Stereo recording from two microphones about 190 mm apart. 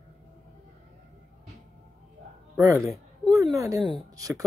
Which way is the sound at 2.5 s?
15° right (ahead or behind).